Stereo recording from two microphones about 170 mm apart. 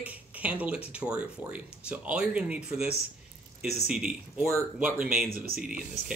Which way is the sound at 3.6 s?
40° left (ahead or behind).